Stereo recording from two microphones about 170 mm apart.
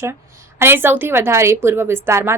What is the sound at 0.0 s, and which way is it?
A woman's voice, 15° right (ahead or behind).